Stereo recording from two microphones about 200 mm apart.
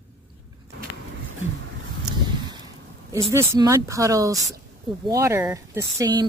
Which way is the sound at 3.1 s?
15° right (ahead or behind).